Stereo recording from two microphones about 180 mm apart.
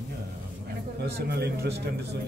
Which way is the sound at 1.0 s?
65° right (ahead or behind).